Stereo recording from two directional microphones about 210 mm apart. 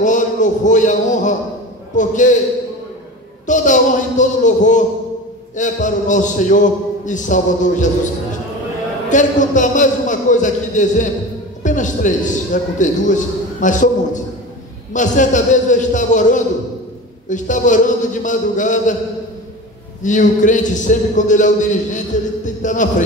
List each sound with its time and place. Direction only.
0.0 s a man's voice: 35° left (ahead or behind)
3.4 s a man's voice: 35° left (ahead or behind)
9.1 s a man's voice: 35° left (ahead or behind)
11.6 s music: 35° left (ahead or behind)
12.7 s a man's voice: 35° left (ahead or behind)
20.0 s a man's voice: 35° left (ahead or behind)